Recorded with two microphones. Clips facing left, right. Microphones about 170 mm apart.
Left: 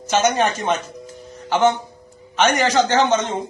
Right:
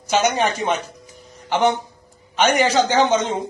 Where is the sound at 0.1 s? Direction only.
15° right (ahead or behind).